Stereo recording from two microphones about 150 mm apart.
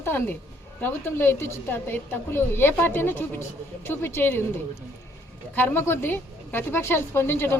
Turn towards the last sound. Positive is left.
turn(degrees=15)  # may be behind; listen again after turning